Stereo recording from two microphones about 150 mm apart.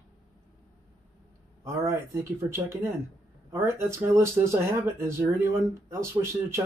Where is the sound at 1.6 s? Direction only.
15° right (ahead or behind).